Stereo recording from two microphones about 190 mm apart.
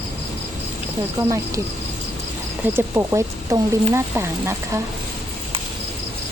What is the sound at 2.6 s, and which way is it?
Speech, 15° right (ahead or behind).